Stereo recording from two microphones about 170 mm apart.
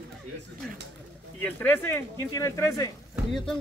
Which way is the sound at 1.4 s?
10° left (ahead or behind).